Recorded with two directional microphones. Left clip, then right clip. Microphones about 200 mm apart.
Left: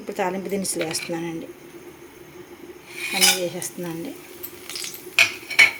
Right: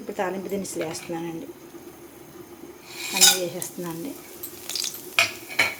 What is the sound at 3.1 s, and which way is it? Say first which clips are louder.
Cutlery: even; 15° left (ahead or behind).